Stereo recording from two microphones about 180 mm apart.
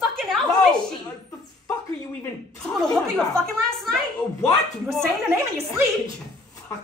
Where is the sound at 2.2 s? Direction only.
5° left (ahead or behind).